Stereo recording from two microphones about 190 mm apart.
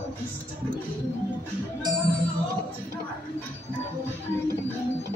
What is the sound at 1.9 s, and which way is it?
Speech, 20° right (ahead or behind).